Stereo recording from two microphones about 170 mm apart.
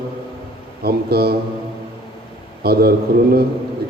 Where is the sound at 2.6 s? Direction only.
65° right (ahead or behind).